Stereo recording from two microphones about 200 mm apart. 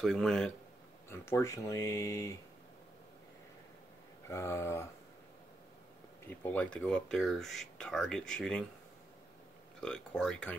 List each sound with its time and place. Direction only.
0.0 s speech: 5° left (ahead or behind)
1.1 s speech: 15° left (ahead or behind)
4.3 s speech: 15° left (ahead or behind)
6.2 s speech: 10° left (ahead or behind)
9.8 s speech: 5° left (ahead or behind)